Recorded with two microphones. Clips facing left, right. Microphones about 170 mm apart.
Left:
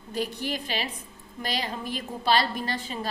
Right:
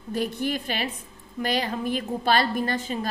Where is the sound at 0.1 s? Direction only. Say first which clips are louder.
Right 4 dB; 50° right (ahead or behind).